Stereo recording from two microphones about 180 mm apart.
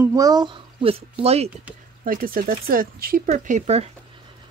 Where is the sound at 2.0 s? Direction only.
50° right (ahead or behind).